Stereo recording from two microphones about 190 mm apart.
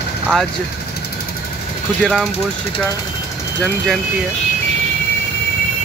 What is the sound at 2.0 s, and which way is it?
Speech, 5° left (ahead or behind).